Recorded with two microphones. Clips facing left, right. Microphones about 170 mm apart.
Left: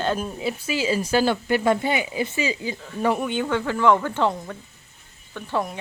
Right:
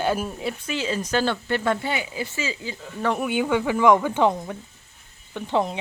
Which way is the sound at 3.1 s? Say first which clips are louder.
Right 2 dB; 5° right (ahead or behind).